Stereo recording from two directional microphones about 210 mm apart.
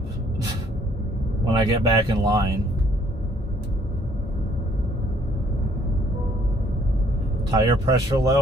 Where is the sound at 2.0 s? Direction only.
20° right (ahead or behind).